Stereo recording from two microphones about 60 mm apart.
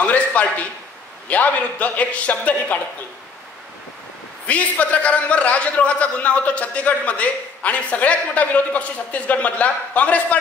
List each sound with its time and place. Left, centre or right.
0.0 s a sound: left
1.3 s a man's voice: left
4.5 s a man's voice: left